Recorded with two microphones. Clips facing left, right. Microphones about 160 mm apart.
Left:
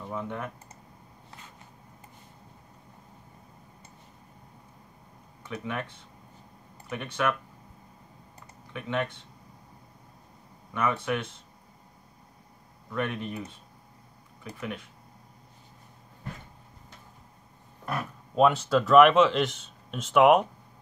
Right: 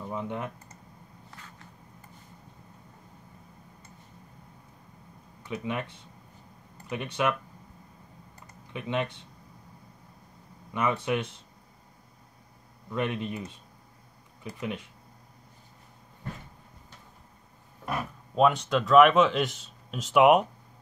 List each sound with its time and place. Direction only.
0.1 s speech: 20° right (ahead or behind)
5.5 s speech: 15° right (ahead or behind)
6.9 s speech: 20° right (ahead or behind)
8.7 s speech: 15° right (ahead or behind)
10.7 s speech: 15° right (ahead or behind)
12.9 s speech: 20° right (ahead or behind)
14.4 s speech: 15° right (ahead or behind)
18.3 s speech: 5° left (ahead or behind)